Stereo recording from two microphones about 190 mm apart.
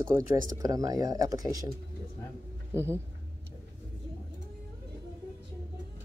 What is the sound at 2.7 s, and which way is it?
Speech, 15° right (ahead or behind).